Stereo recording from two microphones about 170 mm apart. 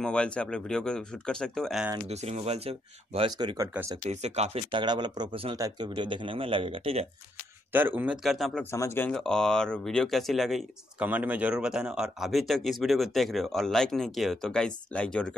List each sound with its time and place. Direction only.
0.0 s speech: 5° left (ahead or behind)
2.0 s speech: 40° right (ahead or behind)
3.3 s speech: 25° right (ahead or behind)
4.0 s speech: 40° right (ahead or behind)
7.7 s speech: 10° right (ahead or behind)
8.7 s speech: 15° left (ahead or behind)